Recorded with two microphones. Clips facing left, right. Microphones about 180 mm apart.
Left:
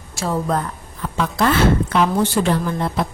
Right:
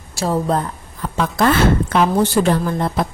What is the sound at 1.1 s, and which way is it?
Speech, 45° right (ahead or behind).